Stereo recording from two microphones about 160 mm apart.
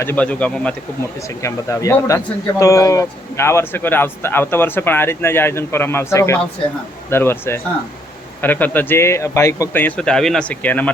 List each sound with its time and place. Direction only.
0.0 s speech: 10° left (ahead or behind)
1.4 s speech: 20° left (ahead or behind)